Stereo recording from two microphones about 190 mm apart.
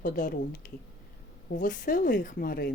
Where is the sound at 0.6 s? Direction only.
45° left (ahead or behind).